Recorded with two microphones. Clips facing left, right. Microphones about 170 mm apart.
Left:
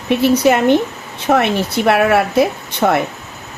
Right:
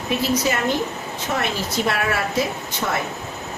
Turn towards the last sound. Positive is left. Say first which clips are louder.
# left 9 dB
turn(degrees=60)  # may be behind; listen again after turning